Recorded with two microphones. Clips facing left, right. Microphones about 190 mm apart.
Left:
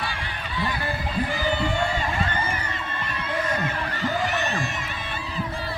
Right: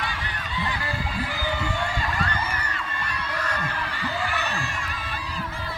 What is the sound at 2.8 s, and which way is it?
Crowd, 25° left (ahead or behind).